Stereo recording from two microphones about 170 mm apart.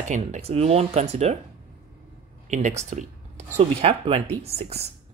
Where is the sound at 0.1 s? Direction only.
40° right (ahead or behind).